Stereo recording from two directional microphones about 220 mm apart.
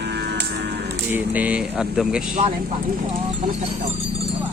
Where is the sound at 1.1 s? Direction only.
5° right (ahead or behind).